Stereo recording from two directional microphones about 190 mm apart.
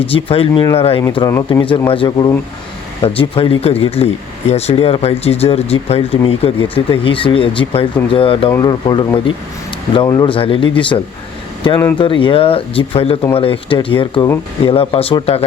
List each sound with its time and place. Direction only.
0.0 s speech: 30° left (ahead or behind)
1.1 s speech: 20° left (ahead or behind)